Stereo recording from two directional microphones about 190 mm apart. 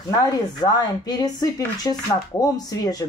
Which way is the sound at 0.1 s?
20° left (ahead or behind).